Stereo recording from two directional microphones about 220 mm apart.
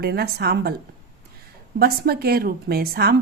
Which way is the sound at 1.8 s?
45° right (ahead or behind).